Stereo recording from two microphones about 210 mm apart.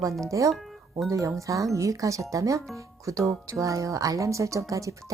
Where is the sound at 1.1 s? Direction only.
15° right (ahead or behind).